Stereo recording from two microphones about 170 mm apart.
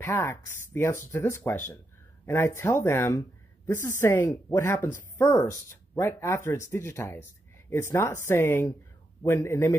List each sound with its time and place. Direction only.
0.0 s speech: 15° left (ahead or behind)